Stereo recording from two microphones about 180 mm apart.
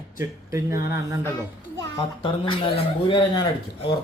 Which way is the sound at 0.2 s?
15° right (ahead or behind).